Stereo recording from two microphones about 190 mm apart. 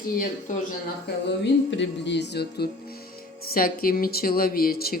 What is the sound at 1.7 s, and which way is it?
A woman's voice, 70° left (ahead or behind).